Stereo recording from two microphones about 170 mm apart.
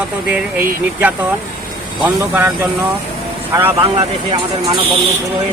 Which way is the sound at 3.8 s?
25° right (ahead or behind).